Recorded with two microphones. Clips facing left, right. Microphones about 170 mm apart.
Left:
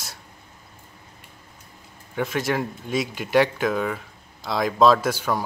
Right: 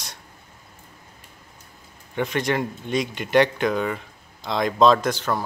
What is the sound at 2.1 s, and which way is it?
Speech, 5° left (ahead or behind).